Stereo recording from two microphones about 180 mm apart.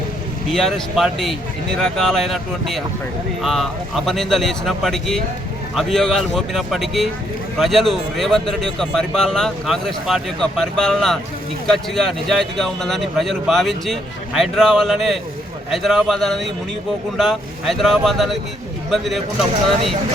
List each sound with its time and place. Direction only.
0.5 s a man's voice: centre (ahead or behind)